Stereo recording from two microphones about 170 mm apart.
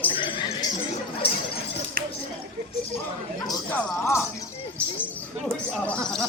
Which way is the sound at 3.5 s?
10° left (ahead or behind).